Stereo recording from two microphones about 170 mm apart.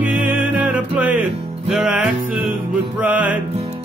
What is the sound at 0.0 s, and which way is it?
Music, 10° right (ahead or behind).